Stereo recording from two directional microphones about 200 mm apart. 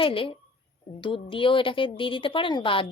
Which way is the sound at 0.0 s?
25° left (ahead or behind).